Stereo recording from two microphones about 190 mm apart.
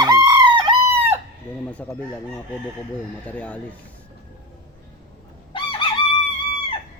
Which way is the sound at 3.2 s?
5° left (ahead or behind).